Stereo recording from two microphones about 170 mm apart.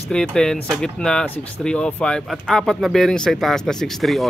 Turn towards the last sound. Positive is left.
turn(degrees=0)  # may be behind; listen again after turning